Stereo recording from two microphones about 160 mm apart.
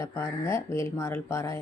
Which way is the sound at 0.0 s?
15° left (ahead or behind).